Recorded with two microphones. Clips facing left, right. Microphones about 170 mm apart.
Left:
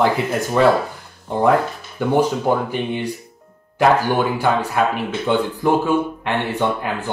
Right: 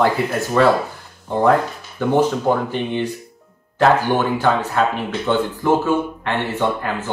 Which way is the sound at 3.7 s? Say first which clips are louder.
Even; 10° left (ahead or behind).